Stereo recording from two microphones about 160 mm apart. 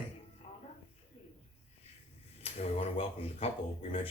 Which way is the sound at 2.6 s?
40° left (ahead or behind).